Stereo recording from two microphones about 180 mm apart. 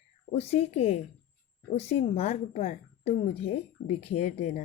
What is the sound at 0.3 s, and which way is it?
Speech, 35° left (ahead or behind).